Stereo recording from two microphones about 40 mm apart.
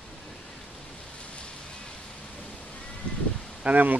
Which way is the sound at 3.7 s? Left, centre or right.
Right.